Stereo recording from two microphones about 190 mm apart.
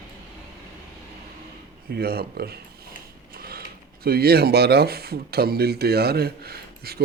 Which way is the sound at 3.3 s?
55° right (ahead or behind).